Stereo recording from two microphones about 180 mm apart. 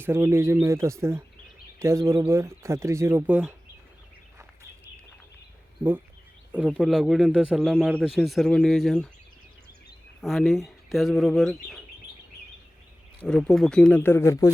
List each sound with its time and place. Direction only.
0.0 s speech: 15° right (ahead or behind)
6.5 s a man's voice: 5° right (ahead or behind)
10.2 s a man's voice: centre (ahead or behind)
13.2 s a man's voice: centre (ahead or behind)